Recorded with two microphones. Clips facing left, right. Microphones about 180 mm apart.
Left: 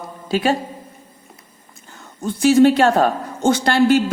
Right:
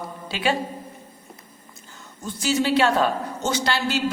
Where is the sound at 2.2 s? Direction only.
55° left (ahead or behind).